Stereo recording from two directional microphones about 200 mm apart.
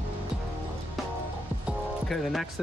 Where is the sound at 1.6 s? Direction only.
Centre (ahead or behind).